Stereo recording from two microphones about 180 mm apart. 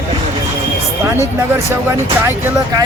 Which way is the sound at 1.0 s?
15° right (ahead or behind).